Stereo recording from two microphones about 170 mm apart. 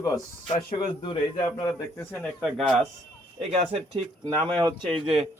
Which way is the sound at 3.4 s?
35° right (ahead or behind).